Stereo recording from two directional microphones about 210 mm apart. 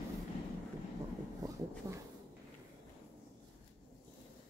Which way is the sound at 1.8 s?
15° right (ahead or behind).